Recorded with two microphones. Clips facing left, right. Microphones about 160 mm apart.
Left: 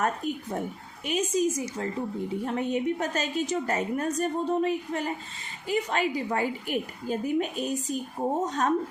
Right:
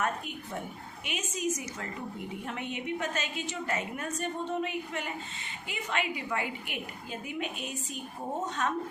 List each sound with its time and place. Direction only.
0.0 s a woman's voice: 40° left (ahead or behind)